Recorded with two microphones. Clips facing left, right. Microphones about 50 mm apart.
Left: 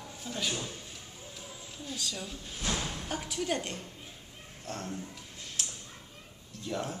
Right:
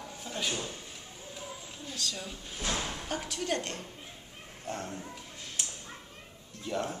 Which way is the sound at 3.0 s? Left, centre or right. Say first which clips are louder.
Left 1 dB; centre.